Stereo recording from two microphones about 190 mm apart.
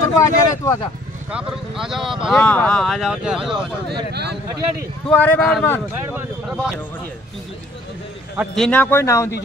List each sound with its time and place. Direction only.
0.2 s speech: 15° left (ahead or behind)
1.3 s speech: centre (ahead or behind)
4.1 s speech: 60° right (ahead or behind)
5.0 s a man's voice: 10° left (ahead or behind)
6.0 s speech: 10° right (ahead or behind)
8.4 s a man's voice: 5° left (ahead or behind)